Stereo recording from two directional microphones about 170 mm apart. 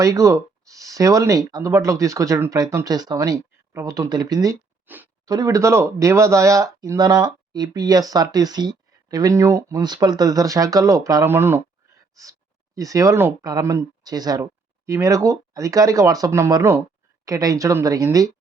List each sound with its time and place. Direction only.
0.0 s speech: 20° right (ahead or behind)
4.9 s a sound: 10° right (ahead or behind)
5.3 s speech: 20° right (ahead or behind)